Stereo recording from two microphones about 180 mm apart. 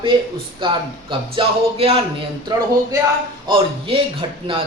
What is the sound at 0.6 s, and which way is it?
Speech, 30° right (ahead or behind).